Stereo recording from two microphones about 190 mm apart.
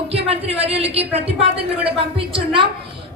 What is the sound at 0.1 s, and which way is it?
A woman's voice, 30° right (ahead or behind).